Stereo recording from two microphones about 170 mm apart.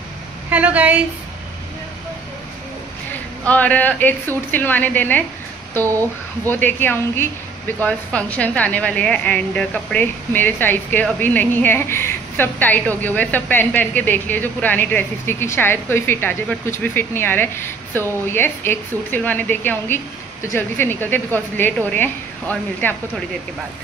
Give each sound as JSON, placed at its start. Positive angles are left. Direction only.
{"t": 0.5, "sound": "a woman's voice", "side_deg": -10}
{"t": 3.4, "sound": "a woman's voice", "side_deg": 10}
{"t": 6.4, "sound": "a woman's voice", "side_deg": 10}